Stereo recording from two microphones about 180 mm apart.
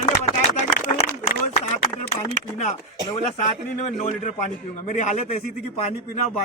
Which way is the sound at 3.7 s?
40° left (ahead or behind).